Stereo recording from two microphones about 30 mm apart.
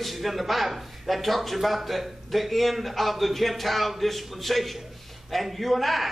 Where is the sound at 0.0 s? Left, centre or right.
Centre.